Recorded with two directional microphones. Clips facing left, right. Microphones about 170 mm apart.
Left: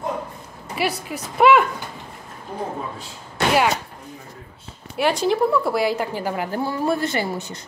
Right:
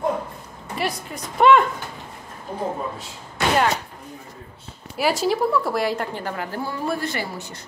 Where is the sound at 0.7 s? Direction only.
5° left (ahead or behind).